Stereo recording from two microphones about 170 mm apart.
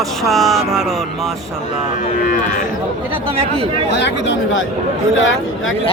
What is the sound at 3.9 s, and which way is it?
Speech, 90° left.